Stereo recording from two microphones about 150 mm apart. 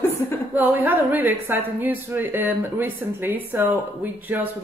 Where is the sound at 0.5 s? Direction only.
10° right (ahead or behind).